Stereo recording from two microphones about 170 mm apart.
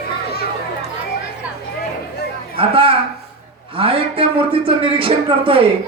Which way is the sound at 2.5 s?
30° right (ahead or behind).